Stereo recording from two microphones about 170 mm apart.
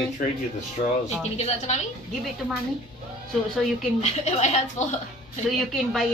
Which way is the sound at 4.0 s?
40° left (ahead or behind).